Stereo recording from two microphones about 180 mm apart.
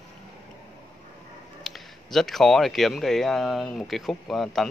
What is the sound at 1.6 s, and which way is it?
A man's voice, centre (ahead or behind).